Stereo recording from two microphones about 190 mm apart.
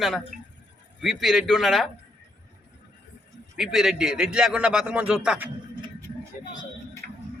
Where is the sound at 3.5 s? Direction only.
Centre (ahead or behind).